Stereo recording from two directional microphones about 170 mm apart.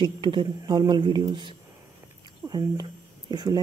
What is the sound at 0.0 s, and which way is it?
Speech, 30° right (ahead or behind).